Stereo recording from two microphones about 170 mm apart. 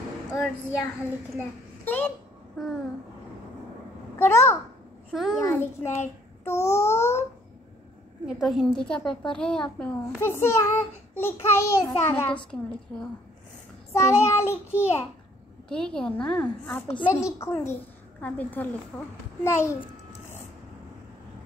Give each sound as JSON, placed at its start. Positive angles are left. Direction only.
{"t": 1.9, "sound": "speech", "side_deg": 10}
{"t": 2.6, "sound": "a woman's voice", "side_deg": 0}
{"t": 4.2, "sound": "a child's voice", "side_deg": 15}
{"t": 5.1, "sound": "a woman's voice", "side_deg": -5}
{"t": 5.4, "sound": "a child's voice", "side_deg": 15}
{"t": 6.4, "sound": "a sound", "side_deg": 15}
{"t": 8.3, "sound": "a woman's voice", "side_deg": 0}
{"t": 15.7, "sound": "a woman's voice", "side_deg": 5}